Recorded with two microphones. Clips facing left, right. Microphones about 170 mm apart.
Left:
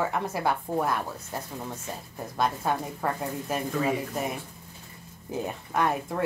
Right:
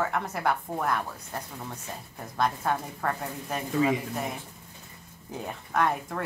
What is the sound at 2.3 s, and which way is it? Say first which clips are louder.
A woman's voice: even; 10° left (ahead or behind).